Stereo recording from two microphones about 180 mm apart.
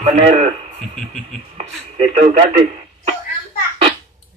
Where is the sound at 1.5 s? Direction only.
35° right (ahead or behind).